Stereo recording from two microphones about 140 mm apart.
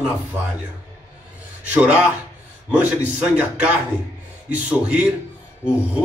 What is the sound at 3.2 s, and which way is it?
Speech, 10° right (ahead or behind).